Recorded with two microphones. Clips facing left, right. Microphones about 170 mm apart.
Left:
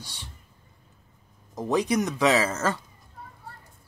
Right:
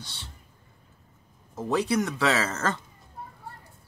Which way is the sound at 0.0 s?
15° left (ahead or behind).